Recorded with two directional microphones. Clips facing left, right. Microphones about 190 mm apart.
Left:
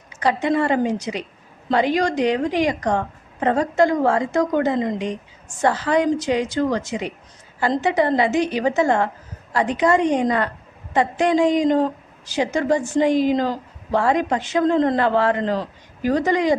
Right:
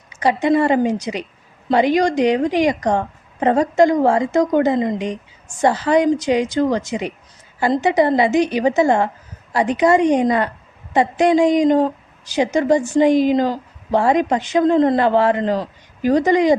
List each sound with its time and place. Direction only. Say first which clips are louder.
0.2 s a woman's voice: right 4 dB; 15° right (ahead or behind)